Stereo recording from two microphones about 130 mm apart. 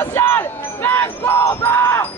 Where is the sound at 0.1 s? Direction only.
20° left (ahead or behind).